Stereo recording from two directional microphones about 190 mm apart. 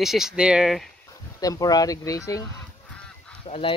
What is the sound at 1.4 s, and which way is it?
Speech, 20° left (ahead or behind).